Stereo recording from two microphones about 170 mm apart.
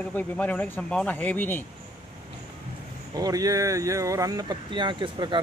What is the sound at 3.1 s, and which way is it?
Speech, 20° right (ahead or behind).